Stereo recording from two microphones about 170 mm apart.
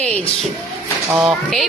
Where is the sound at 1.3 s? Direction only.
Centre (ahead or behind).